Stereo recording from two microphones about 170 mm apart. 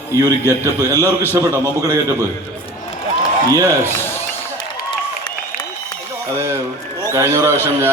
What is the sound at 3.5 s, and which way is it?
Speech, 20° right (ahead or behind).